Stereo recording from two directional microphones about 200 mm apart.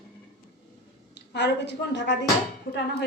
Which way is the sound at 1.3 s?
60° left (ahead or behind).